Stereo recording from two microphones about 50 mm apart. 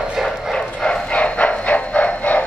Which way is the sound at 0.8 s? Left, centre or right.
Left.